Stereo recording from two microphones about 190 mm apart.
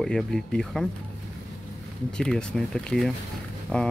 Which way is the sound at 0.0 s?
5° left (ahead or behind).